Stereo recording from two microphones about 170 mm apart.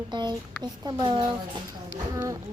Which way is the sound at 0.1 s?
25° right (ahead or behind).